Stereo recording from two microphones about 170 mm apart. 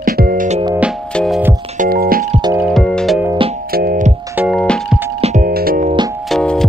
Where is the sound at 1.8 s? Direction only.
60° right (ahead or behind).